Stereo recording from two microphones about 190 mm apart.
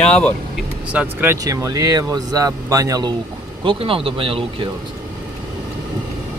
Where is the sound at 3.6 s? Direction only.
30° right (ahead or behind).